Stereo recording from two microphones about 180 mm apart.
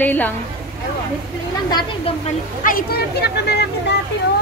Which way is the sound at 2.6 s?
55° left (ahead or behind).